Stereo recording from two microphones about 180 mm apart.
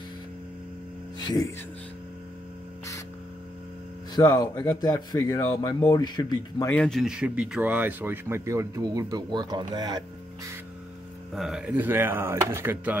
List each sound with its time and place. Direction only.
1.2 s a sound: 20° left (ahead or behind)
4.1 s speech: 20° left (ahead or behind)
6.7 s speech: 5° left (ahead or behind); by 9.7 s 25° right (ahead or behind)
9.8 s music: 25° right (ahead or behind)
11.3 s speech: centre (ahead or behind)